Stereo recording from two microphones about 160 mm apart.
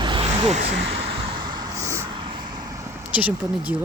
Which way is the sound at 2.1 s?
30° right (ahead or behind).